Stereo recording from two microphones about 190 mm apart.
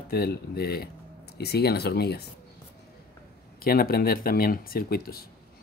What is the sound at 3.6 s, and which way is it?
Speech, 50° left (ahead or behind).